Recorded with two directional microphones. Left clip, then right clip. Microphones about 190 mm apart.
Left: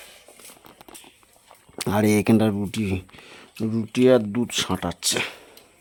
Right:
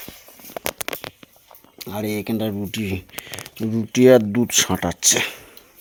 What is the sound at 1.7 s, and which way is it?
Speech, 40° left (ahead or behind).